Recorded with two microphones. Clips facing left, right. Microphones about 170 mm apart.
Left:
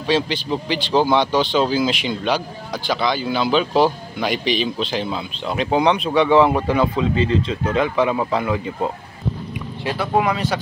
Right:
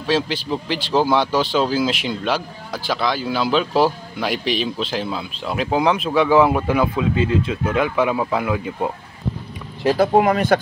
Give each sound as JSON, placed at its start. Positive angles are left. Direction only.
{"t": 0.0, "sound": "speech", "side_deg": -5}
{"t": 9.8, "sound": "speech", "side_deg": -45}